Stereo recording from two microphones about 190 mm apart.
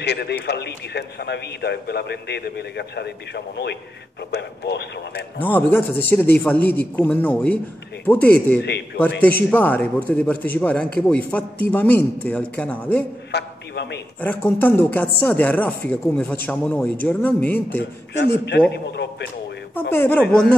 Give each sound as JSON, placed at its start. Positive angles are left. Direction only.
{"t": 0.0, "sound": "a man's voice", "side_deg": 60}
{"t": 5.4, "sound": "speech", "side_deg": 10}
{"t": 13.3, "sound": "a sound", "side_deg": 65}
{"t": 14.2, "sound": "speech", "side_deg": 10}
{"t": 18.1, "sound": "a man's voice", "side_deg": 60}
{"t": 19.9, "sound": "speech", "side_deg": 10}